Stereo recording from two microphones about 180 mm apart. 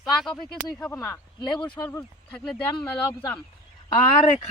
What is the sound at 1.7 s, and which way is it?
Speech, 15° left (ahead or behind).